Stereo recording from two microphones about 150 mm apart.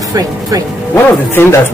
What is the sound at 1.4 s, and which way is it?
Speech, 15° left (ahead or behind).